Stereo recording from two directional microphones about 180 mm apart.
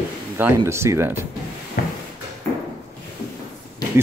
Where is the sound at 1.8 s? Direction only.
50° left (ahead or behind).